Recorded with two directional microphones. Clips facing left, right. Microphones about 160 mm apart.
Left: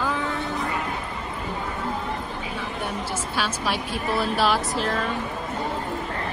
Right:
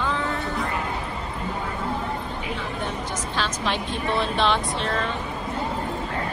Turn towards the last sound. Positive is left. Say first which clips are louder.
# even
turn(degrees=5)  # may be behind; listen again after turning